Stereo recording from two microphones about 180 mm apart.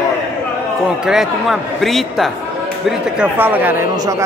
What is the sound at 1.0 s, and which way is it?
A man's voice, centre (ahead or behind).